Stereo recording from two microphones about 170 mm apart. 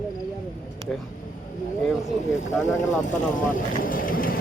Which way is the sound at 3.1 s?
50° left (ahead or behind).